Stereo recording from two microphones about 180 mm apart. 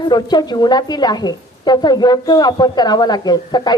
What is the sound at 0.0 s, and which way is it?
A woman's voice, 25° left (ahead or behind).